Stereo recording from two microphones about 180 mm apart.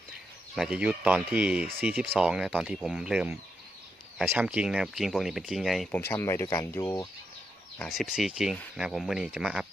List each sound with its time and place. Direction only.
0.5 s speech: 5° right (ahead or behind)
6.1 s speech: 15° left (ahead or behind)
7.8 s speech: centre (ahead or behind)